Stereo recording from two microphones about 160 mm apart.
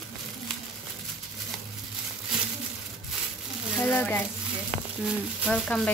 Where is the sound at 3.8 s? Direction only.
10° left (ahead or behind).